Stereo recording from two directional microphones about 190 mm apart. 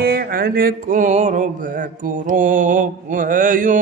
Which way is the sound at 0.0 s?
55° right (ahead or behind).